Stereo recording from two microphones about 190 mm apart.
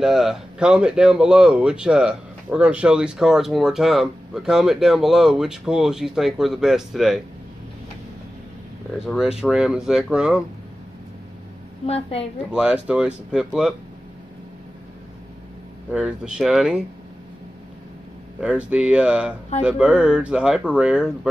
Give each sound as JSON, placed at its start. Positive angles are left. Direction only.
{"t": 0.0, "sound": "speech", "side_deg": 0}
{"t": 9.0, "sound": "speech", "side_deg": 0}
{"t": 11.8, "sound": "a woman's voice", "side_deg": 30}
{"t": 12.5, "sound": "speech", "side_deg": -5}
{"t": 15.9, "sound": "speech", "side_deg": -5}
{"t": 18.4, "sound": "speech", "side_deg": -5}